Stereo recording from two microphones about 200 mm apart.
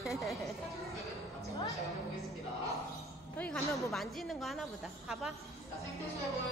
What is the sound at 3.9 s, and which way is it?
A woman's voice, centre (ahead or behind).